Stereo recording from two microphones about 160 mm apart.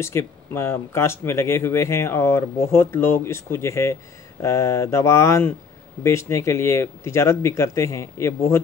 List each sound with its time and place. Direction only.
0.0 s speech: 15° left (ahead or behind)